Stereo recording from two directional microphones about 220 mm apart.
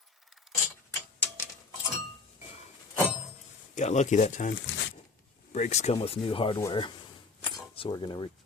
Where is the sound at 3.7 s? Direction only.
30° left (ahead or behind).